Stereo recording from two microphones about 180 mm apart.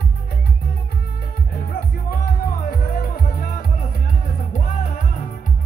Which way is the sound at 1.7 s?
60° left (ahead or behind).